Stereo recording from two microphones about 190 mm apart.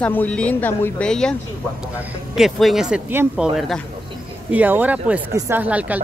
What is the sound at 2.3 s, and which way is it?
Speech, centre (ahead or behind).